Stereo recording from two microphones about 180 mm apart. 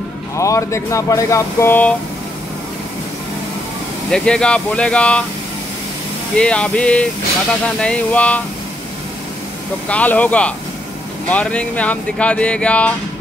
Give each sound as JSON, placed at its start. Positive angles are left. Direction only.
{"t": 0.4, "sound": "speech", "side_deg": 15}
{"t": 4.1, "sound": "speech", "side_deg": 5}
{"t": 6.3, "sound": "speech", "side_deg": 5}
{"t": 9.8, "sound": "speech", "side_deg": 10}